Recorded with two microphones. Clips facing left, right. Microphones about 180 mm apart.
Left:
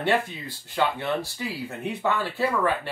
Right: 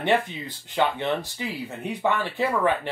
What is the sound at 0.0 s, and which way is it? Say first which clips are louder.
Speech: right 1 dB; 20° right (ahead or behind).